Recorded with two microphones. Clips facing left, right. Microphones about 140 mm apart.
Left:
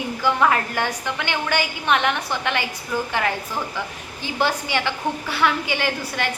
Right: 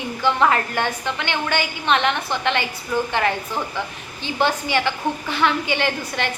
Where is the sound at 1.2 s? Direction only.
10° left (ahead or behind).